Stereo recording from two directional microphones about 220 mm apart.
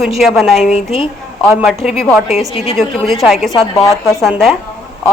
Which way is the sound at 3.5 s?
25° left (ahead or behind).